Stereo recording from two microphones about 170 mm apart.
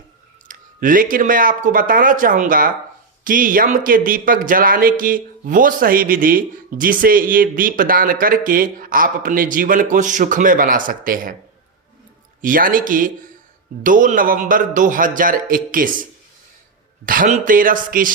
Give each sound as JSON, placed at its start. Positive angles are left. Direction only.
{"t": 0.4, "sound": "speech", "side_deg": -55}
{"t": 12.4, "sound": "speech", "side_deg": -55}
{"t": 17.1, "sound": "speech", "side_deg": -50}